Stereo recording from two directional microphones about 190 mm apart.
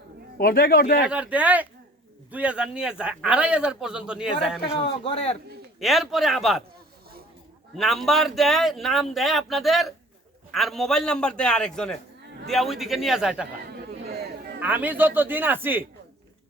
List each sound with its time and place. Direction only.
0.3 s a man's voice: 50° left (ahead or behind)
1.0 s speech: 5° right (ahead or behind)
4.7 s a man's voice: 30° left (ahead or behind)
5.8 s speech: centre (ahead or behind)
7.8 s speech: centre (ahead or behind)
13.7 s a sound: 55° right (ahead or behind)
14.6 s speech: 10° right (ahead or behind)